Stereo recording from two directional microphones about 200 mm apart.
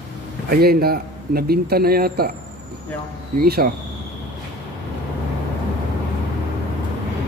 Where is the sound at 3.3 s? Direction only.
50° right (ahead or behind).